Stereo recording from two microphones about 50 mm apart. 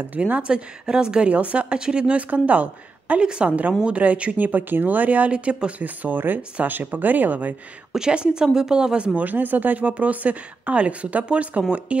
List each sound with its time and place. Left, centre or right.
0.2 s a woman's voice: right
1.3 s a woman's voice: right
7.9 s speech: centre
9.2 s a woman's voice: right